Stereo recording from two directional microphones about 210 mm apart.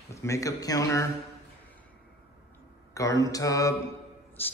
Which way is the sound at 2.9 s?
15° left (ahead or behind).